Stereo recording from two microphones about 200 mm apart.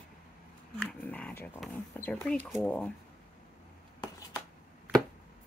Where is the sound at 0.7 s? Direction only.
5° left (ahead or behind).